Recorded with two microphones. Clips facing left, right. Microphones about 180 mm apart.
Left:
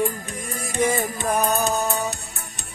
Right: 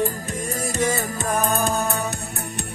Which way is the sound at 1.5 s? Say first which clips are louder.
Even; 55° right (ahead or behind).